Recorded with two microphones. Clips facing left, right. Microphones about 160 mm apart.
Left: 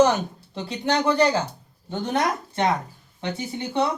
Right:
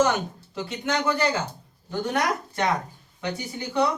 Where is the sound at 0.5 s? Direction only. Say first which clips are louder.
Left 3 dB; 30° left (ahead or behind).